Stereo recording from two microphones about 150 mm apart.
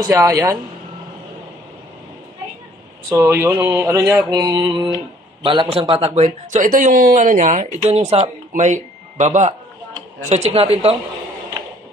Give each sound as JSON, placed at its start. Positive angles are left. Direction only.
{"t": 0.0, "sound": "speech", "side_deg": -25}
{"t": 3.1, "sound": "speech", "side_deg": -15}
{"t": 4.3, "sound": "speech", "side_deg": -25}
{"t": 7.6, "sound": "speech", "side_deg": -45}